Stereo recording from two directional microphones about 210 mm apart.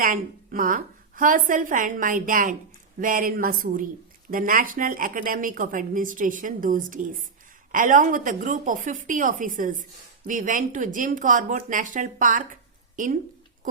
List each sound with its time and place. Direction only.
0.0 s a woman's voice: 40° right (ahead or behind)